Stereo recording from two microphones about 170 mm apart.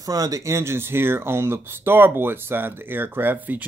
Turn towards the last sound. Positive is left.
turn(degrees=-10)  # may be behind; listen again after turning